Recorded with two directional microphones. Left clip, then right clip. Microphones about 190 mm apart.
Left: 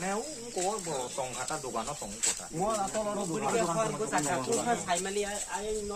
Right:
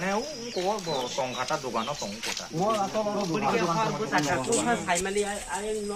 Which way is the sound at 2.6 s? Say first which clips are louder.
Right 5 dB; 10° left (ahead or behind).